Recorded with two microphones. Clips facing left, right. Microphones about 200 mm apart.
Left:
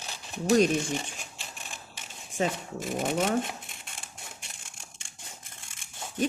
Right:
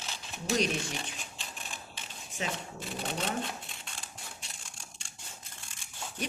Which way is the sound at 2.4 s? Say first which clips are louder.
Left 8 dB; 45° left (ahead or behind).